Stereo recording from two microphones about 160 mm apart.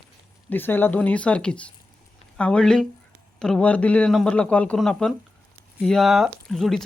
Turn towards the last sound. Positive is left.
turn(degrees=0)  # may be behind; listen again after turning